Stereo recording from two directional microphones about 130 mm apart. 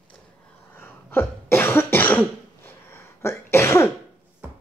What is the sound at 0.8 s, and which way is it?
Cough, 15° left (ahead or behind).